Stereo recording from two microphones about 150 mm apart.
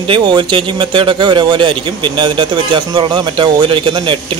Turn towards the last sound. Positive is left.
turn(degrees=-35)  # may be behind; listen again after turning